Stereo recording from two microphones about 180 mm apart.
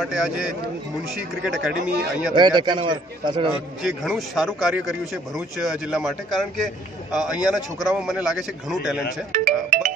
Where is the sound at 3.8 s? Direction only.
Centre (ahead or behind).